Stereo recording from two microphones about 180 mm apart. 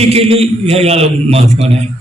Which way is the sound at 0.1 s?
35° right (ahead or behind).